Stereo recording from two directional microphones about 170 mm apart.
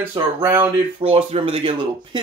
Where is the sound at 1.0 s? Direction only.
35° right (ahead or behind).